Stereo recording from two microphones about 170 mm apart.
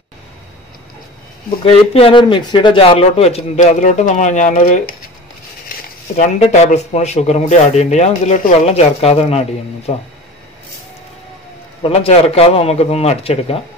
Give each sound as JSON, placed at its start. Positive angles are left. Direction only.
{"t": 1.6, "sound": "speech", "side_deg": 35}
{"t": 6.1, "sound": "speech", "side_deg": 40}
{"t": 11.8, "sound": "speech", "side_deg": 35}